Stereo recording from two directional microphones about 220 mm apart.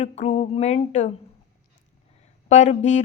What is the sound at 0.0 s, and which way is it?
Speech, 30° left (ahead or behind).